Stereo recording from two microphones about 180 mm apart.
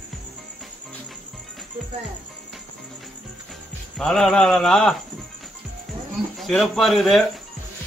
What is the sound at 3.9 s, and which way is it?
Speech, 5° left (ahead or behind).